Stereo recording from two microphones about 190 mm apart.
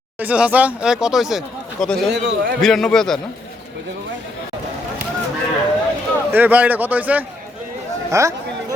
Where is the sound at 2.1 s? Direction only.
65° right (ahead or behind).